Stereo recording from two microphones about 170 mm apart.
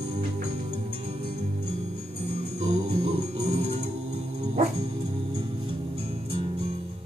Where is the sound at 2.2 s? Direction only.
40° right (ahead or behind).